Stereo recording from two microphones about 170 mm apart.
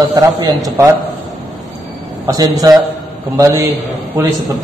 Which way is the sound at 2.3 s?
20° right (ahead or behind).